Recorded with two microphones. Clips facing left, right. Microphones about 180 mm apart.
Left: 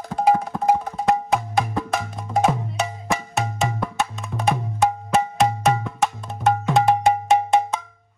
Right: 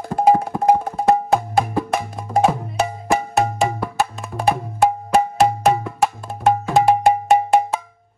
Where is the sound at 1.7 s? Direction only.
Centre (ahead or behind).